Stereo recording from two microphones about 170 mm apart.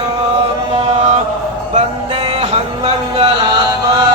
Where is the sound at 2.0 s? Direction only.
30° right (ahead or behind).